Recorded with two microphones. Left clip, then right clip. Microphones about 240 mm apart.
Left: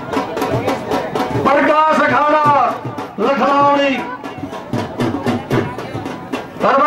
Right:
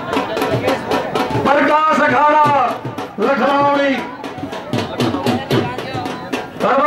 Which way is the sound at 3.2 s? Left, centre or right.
Centre.